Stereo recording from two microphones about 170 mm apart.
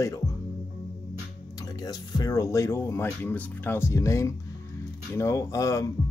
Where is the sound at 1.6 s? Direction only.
20° left (ahead or behind).